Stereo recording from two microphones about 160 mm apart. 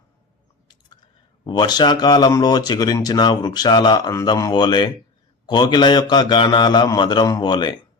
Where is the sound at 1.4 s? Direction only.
30° left (ahead or behind).